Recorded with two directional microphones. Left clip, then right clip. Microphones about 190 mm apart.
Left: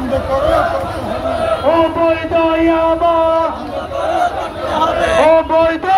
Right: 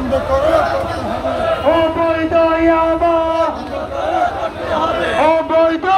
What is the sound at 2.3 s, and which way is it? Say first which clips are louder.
Speech: right 3 dB; 15° left (ahead or behind).